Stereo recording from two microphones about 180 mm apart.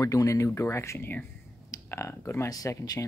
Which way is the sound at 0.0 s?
20° left (ahead or behind).